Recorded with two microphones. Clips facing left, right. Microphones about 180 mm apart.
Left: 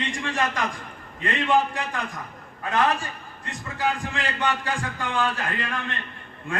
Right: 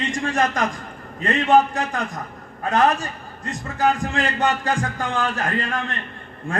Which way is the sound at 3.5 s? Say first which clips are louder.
Right 6 dB; 45° right (ahead or behind).